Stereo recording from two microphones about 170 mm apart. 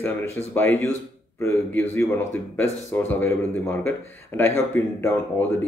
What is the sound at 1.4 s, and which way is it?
Speech, 10° left (ahead or behind).